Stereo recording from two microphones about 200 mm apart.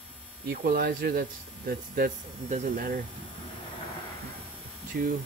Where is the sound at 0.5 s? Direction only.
45° right (ahead or behind).